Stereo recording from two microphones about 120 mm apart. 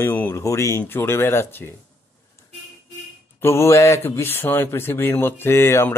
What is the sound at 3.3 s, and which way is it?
Speech, 20° left (ahead or behind).